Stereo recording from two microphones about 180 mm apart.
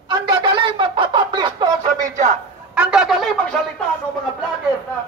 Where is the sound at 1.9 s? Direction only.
45° right (ahead or behind).